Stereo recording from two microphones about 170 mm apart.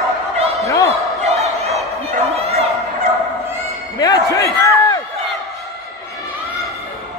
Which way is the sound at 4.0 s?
20° left (ahead or behind).